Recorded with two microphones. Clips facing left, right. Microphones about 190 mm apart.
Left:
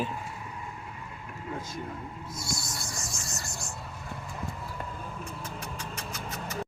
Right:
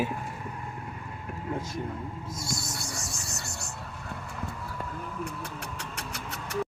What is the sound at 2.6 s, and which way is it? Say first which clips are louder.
Music: right 2 dB; 65° right (ahead or behind).